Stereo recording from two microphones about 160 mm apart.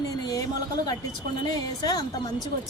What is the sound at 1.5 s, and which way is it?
Speech, 25° left (ahead or behind).